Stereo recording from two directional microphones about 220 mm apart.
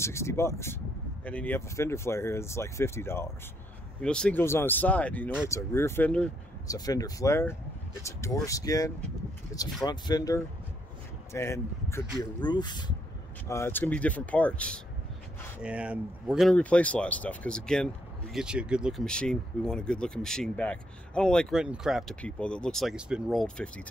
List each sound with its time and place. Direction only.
0.0 s speech: 10° left (ahead or behind)
6.7 s speech: 15° left (ahead or behind)
9.5 s a sound: 15° left (ahead or behind)
9.8 s speech: 20° left (ahead or behind)
15.6 s speech: 5° right (ahead or behind)